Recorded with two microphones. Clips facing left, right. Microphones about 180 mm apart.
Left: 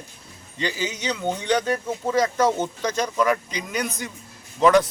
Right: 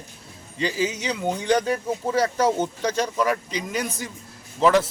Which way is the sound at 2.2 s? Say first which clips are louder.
Left 1 dB; 10° right (ahead or behind).